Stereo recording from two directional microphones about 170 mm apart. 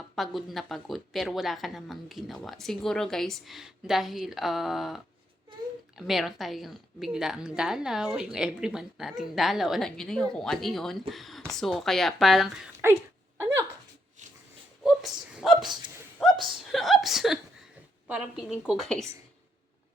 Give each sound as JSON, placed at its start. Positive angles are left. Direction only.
{"t": 0.2, "sound": "a woman's voice", "side_deg": 0}
{"t": 6.0, "sound": "a woman's voice", "side_deg": 0}
{"t": 12.8, "sound": "speech", "side_deg": -15}
{"t": 13.4, "sound": "a sound", "side_deg": -15}
{"t": 14.8, "sound": "a sound", "side_deg": 0}
{"t": 18.1, "sound": "a woman's voice", "side_deg": -5}